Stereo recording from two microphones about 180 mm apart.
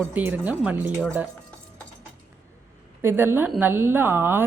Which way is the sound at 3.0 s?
15° right (ahead or behind).